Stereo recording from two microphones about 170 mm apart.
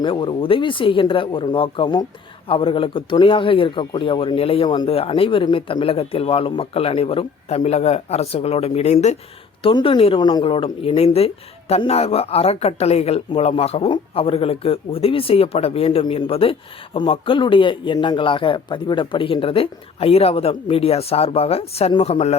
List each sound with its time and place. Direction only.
0.0 s speech: 30° left (ahead or behind)
9.6 s speech: 30° left (ahead or behind)